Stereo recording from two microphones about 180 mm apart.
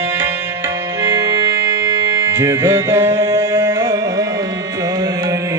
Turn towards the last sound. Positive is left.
turn(degrees=-20)  # may be behind; listen again after turning